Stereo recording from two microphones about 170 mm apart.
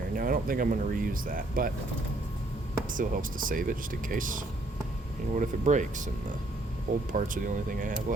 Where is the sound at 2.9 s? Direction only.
55° right (ahead or behind).